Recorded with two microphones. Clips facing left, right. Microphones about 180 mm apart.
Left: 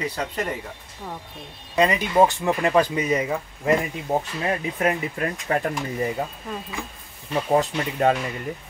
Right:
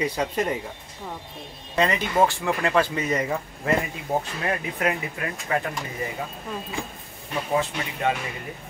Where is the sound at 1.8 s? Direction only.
15° left (ahead or behind).